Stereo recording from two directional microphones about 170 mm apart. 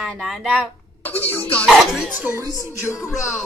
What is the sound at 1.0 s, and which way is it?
Speech, 10° left (ahead or behind).